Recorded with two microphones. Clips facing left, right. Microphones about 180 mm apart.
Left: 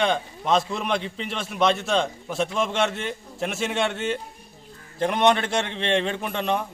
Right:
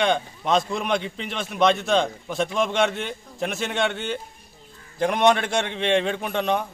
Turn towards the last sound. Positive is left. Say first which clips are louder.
# right 2 dB
turn(degrees=0)  # may be behind; listen again after turning